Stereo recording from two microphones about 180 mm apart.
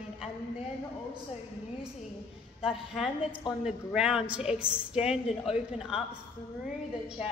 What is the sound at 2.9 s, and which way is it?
A woman's voice, centre (ahead or behind).